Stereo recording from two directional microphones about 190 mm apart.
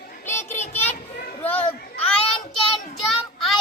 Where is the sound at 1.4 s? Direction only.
10° left (ahead or behind).